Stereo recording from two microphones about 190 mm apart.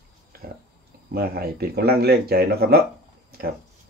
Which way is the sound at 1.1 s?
55° right (ahead or behind).